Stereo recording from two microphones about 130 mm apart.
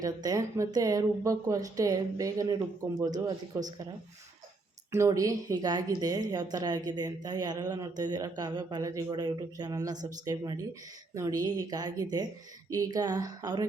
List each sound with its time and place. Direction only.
0.0 s speech: 30° right (ahead or behind)
4.9 s a woman's voice: 25° right (ahead or behind)